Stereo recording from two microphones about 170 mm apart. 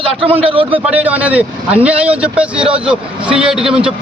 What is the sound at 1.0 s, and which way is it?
Speech, 10° right (ahead or behind).